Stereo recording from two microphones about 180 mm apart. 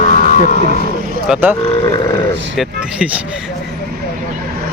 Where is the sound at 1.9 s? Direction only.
20° left (ahead or behind).